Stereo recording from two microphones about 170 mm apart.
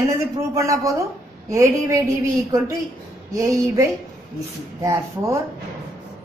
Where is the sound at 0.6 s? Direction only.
20° right (ahead or behind).